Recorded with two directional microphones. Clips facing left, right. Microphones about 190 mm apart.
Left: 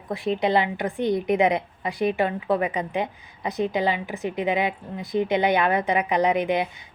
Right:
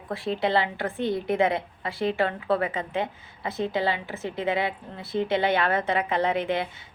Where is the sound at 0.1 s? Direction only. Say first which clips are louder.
Left 3 dB; 15° left (ahead or behind).